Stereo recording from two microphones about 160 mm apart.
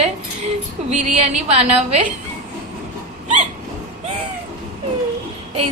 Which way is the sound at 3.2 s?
45° right (ahead or behind).